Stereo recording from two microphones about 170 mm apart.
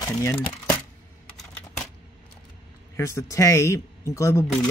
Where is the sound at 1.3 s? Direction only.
5° left (ahead or behind).